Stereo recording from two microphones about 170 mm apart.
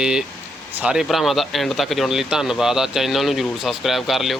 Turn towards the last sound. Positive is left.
turn(degrees=0)  # may be behind; listen again after turning